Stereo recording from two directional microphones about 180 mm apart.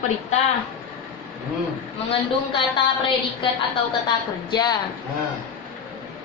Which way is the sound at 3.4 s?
25° left (ahead or behind).